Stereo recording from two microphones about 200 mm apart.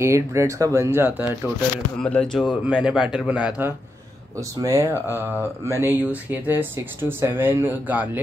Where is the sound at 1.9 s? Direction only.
5° left (ahead or behind).